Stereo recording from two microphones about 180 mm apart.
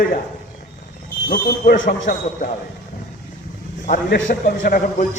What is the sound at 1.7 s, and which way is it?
Speech, 90° left.